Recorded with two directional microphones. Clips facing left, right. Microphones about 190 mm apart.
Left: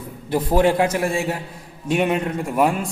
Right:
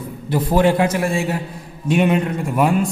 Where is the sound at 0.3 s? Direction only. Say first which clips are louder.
Right 1 dB; 40° left (ahead or behind).